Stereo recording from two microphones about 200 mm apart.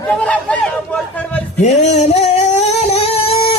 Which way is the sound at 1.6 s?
35° left (ahead or behind).